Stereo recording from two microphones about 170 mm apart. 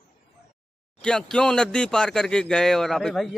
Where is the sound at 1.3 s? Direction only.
5° left (ahead or behind).